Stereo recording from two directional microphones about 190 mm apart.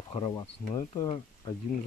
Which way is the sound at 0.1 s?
25° left (ahead or behind).